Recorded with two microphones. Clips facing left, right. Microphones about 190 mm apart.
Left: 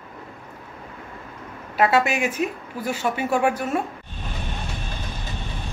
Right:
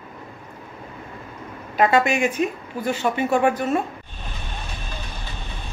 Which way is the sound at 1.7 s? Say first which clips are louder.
Right 1 dB; 5° left (ahead or behind).